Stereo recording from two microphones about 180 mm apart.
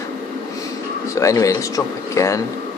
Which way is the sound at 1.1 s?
20° left (ahead or behind).